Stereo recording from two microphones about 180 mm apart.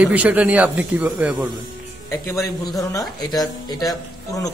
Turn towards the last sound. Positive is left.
turn(degrees=20)  # may be behind; listen again after turning